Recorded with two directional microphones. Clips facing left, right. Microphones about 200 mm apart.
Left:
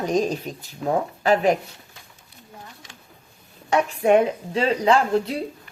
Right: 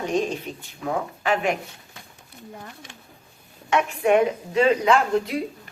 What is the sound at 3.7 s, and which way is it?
A woman's voice, 35° left (ahead or behind).